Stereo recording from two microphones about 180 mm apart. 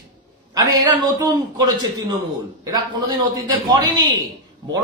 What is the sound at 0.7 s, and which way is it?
A man's voice, 20° right (ahead or behind).